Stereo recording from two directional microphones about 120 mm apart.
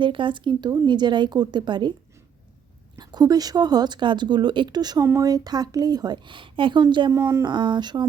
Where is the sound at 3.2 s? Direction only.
35° right (ahead or behind).